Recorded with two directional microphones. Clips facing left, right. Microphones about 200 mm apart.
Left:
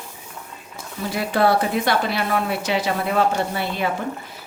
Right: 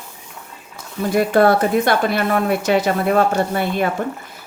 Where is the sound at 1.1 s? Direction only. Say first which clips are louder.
Right 5 dB; 50° right (ahead or behind).